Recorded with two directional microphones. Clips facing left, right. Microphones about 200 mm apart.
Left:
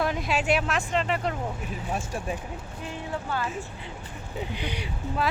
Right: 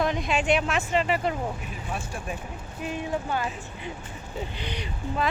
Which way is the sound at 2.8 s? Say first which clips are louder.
Right 5 dB; 15° right (ahead or behind).